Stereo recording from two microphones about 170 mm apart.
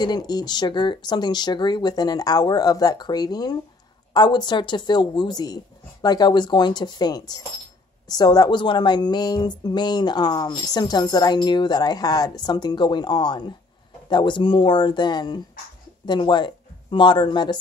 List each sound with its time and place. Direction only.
0.0 s speech: 25° left (ahead or behind)